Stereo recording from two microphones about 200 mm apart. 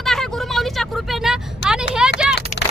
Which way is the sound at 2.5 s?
35° left (ahead or behind).